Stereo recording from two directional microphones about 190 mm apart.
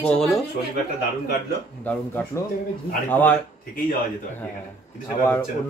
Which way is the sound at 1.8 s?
10° left (ahead or behind).